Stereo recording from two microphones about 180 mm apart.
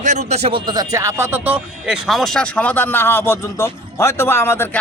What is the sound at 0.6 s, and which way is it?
A man's voice, 20° right (ahead or behind).